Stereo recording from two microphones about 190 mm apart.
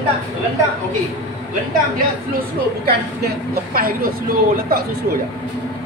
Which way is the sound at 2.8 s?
50° right (ahead or behind).